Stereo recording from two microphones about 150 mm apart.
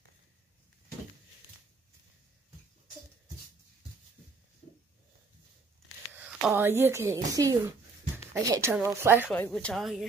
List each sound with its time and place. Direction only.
6.1 s speech: 15° right (ahead or behind)
9.3 s speech: 10° left (ahead or behind)